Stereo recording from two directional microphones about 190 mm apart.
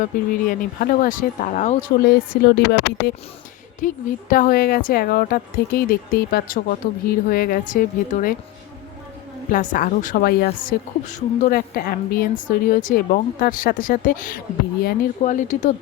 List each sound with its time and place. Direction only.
0.0 s speech: 45° left (ahead or behind)
2.0 s speech: 55° left (ahead or behind)
3.8 s speech: 45° left (ahead or behind)
9.5 s speech: 45° left (ahead or behind)